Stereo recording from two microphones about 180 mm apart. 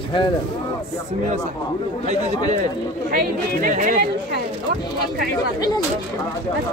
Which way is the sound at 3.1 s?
50° right (ahead or behind).